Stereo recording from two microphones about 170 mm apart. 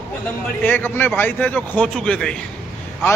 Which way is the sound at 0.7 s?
10° left (ahead or behind).